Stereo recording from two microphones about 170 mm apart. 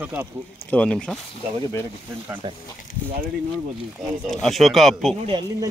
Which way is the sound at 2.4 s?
30° right (ahead or behind).